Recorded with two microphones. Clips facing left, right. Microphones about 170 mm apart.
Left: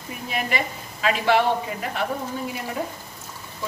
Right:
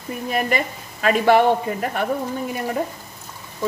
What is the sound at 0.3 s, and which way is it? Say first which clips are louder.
A woman's voice: right 4 dB; 45° right (ahead or behind).